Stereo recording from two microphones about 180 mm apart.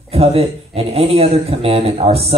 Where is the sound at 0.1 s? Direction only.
35° right (ahead or behind).